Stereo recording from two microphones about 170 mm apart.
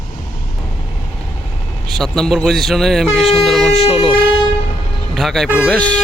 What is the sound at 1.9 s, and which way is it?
Speech, centre (ahead or behind).